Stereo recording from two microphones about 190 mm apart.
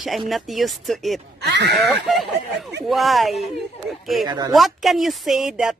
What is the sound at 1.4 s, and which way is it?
Speech, 60° right (ahead or behind).